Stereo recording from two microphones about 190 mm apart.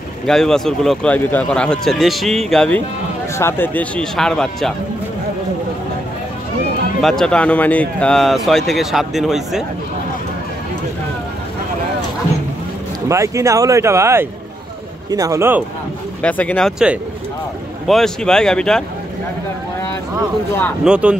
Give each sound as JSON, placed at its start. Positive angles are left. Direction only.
{"t": 0.3, "sound": "speech", "side_deg": 5}
{"t": 7.0, "sound": "speech", "side_deg": 0}
{"t": 13.1, "sound": "speech", "side_deg": -15}
{"t": 16.2, "sound": "speech", "side_deg": 5}
{"t": 20.8, "sound": "speech", "side_deg": -5}